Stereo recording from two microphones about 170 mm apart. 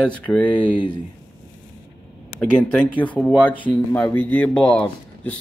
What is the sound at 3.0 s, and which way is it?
A man's voice, 10° left (ahead or behind).